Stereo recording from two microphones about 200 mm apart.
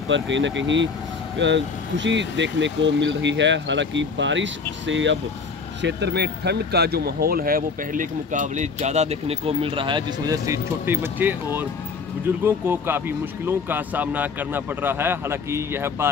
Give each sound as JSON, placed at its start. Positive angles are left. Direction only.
{"t": 0.1, "sound": "speech", "side_deg": -65}